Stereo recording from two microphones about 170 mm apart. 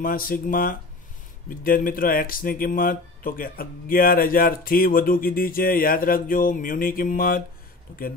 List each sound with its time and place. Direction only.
0.0 s speech: 55° left (ahead or behind)